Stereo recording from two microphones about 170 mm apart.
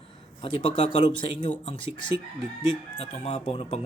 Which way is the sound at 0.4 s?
30° left (ahead or behind).